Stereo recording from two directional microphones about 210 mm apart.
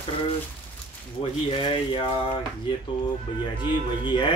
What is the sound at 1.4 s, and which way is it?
Speech, 25° left (ahead or behind).